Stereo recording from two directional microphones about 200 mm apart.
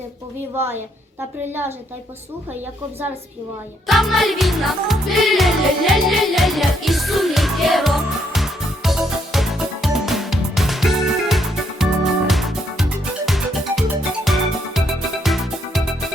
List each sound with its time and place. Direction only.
0.5 s a woman's voice: 10° right (ahead or behind)
3.8 s music: centre (ahead or behind)